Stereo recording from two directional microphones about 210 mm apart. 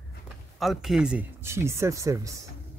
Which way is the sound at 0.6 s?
Centre (ahead or behind).